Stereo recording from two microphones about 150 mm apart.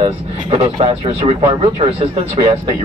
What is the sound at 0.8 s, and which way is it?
Speech, 45° right (ahead or behind).